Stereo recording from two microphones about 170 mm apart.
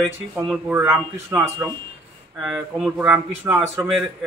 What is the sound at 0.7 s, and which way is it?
Speech, 15° right (ahead or behind).